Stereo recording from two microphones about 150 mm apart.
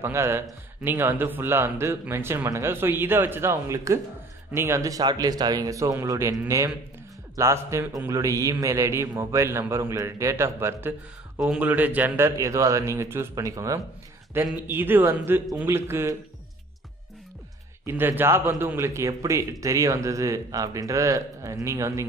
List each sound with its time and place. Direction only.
0.0 s a man's voice: 15° right (ahead or behind)
11.3 s a man's voice: 5° right (ahead or behind)
17.8 s a man's voice: 15° right (ahead or behind)